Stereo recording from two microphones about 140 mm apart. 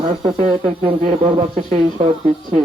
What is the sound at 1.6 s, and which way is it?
Speech, 60° right (ahead or behind).